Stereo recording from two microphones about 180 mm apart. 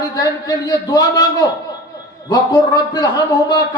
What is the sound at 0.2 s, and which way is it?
A man's voice, 20° left (ahead or behind).